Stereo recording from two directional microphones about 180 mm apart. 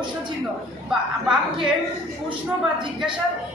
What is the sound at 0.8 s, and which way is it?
Speech, 5° right (ahead or behind).